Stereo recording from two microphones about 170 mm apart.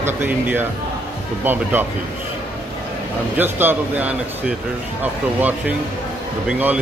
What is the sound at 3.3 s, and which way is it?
A man's voice, 10° right (ahead or behind).